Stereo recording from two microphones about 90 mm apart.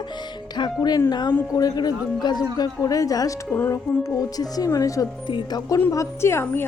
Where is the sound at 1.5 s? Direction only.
45° left (ahead or behind).